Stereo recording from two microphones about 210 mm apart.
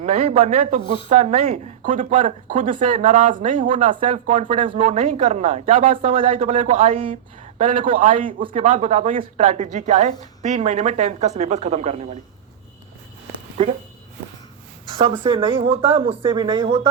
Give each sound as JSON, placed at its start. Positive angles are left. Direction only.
{"t": 0.0, "sound": "speech", "side_deg": -30}
{"t": 4.8, "sound": "speech", "side_deg": -35}
{"t": 8.1, "sound": "speech", "side_deg": -40}
{"t": 8.4, "sound": "speech", "side_deg": -25}
{"t": 13.6, "sound": "speech", "side_deg": -25}
{"t": 15.2, "sound": "speech", "side_deg": -25}